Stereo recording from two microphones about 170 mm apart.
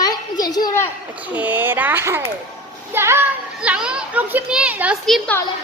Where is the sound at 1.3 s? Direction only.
10° right (ahead or behind).